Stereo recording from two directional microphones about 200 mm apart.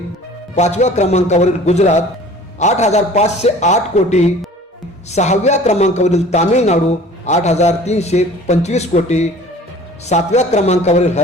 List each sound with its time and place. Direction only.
0.5 s a man's voice: 35° left (ahead or behind)